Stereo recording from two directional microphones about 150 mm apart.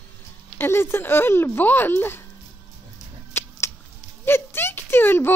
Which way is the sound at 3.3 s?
15° left (ahead or behind).